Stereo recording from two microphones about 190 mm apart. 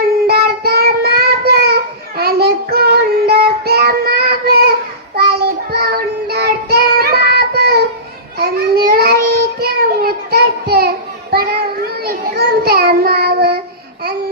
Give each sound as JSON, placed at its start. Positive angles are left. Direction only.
{"t": 0.3, "sound": "child singing", "side_deg": -55}